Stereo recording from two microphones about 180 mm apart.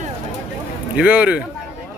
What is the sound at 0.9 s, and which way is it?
Speech, 10° right (ahead or behind).